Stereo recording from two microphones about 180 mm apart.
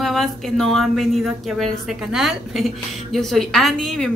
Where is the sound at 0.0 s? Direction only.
Centre (ahead or behind).